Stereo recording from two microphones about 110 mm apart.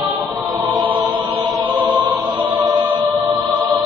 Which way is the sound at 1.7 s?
45° right (ahead or behind).